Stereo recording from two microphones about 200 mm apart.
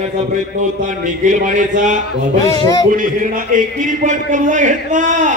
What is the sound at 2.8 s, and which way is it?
A man's voice, 40° right (ahead or behind).